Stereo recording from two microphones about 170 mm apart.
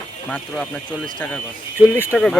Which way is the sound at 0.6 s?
10° left (ahead or behind).